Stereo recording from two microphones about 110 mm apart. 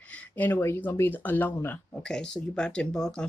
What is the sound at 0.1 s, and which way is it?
Speech, 20° left (ahead or behind).